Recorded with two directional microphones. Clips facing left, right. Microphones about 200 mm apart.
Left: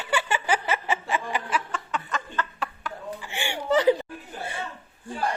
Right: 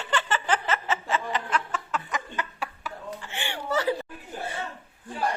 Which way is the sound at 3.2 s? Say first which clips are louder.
Left 3 dB; 10° left (ahead or behind).